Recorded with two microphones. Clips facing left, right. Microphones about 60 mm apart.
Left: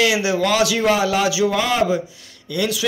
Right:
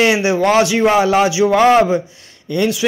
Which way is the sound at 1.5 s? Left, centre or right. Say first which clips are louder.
Right 8 dB; right.